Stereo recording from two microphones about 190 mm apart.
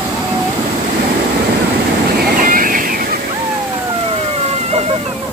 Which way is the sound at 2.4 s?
45° right (ahead or behind).